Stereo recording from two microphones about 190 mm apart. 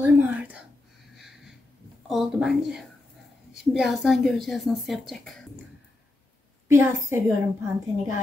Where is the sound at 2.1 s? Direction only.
Centre (ahead or behind).